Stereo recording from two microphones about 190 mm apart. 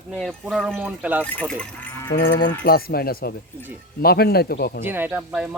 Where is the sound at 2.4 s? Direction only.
55° left (ahead or behind).